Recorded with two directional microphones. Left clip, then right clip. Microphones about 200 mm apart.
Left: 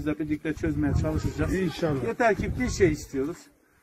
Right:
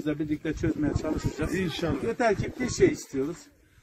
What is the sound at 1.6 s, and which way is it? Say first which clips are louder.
Speech: left 2 dB; 35° left (ahead or behind).